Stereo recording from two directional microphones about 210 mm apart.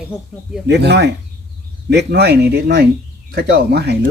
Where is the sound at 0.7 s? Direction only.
55° right (ahead or behind).